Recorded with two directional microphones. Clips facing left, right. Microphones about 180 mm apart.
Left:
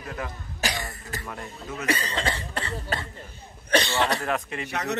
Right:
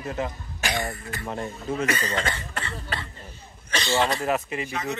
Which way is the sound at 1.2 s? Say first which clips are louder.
Right 6 dB; 30° right (ahead or behind).